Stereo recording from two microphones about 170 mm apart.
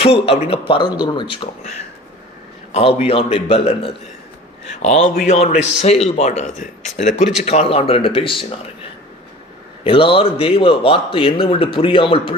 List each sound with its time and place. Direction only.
0.0 s a man's voice: 35° left (ahead or behind)
2.7 s a man's voice: 35° left (ahead or behind)
9.8 s a man's voice: 30° left (ahead or behind)